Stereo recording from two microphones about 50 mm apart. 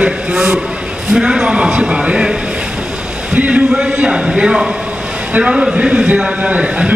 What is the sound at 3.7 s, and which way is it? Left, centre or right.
A man's voice, centre.